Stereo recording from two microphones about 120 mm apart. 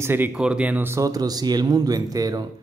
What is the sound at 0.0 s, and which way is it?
Speech, 15° right (ahead or behind).